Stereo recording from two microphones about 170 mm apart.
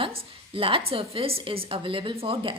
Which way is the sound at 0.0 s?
35° right (ahead or behind).